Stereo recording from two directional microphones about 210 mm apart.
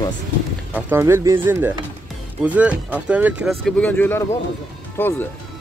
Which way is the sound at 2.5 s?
5° right (ahead or behind).